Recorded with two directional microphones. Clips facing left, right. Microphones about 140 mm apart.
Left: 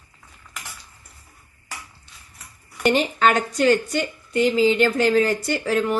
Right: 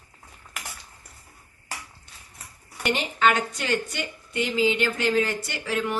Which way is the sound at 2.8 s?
40° left (ahead or behind).